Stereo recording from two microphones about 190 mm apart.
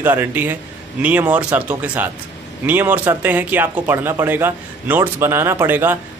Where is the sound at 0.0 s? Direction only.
10° right (ahead or behind).